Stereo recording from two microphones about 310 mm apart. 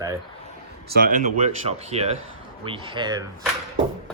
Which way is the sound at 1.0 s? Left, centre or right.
Right.